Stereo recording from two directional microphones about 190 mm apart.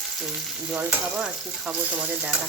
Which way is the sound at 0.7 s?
5° right (ahead or behind).